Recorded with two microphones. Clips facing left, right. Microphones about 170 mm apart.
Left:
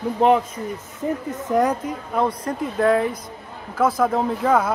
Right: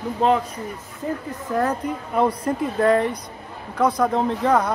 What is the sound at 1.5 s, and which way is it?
Speech, 20° left (ahead or behind).